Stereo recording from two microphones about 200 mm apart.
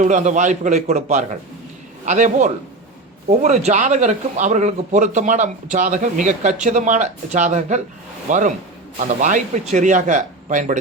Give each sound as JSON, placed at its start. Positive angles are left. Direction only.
{"t": 0.0, "sound": "speech", "side_deg": -35}